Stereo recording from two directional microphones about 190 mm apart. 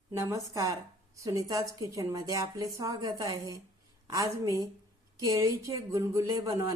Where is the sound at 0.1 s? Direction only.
15° right (ahead or behind).